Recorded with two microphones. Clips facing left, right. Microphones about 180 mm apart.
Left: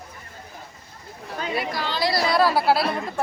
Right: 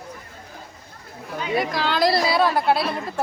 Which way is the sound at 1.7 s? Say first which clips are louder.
Right 3 dB; 90° right.